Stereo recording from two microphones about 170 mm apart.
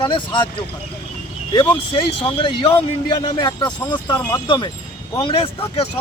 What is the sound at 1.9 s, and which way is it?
Speech, 30° left (ahead or behind).